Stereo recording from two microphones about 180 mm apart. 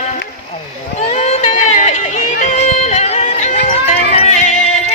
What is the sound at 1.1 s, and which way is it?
Music, 40° left (ahead or behind).